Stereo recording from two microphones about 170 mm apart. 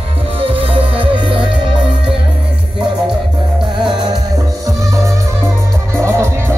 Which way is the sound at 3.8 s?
30° right (ahead or behind).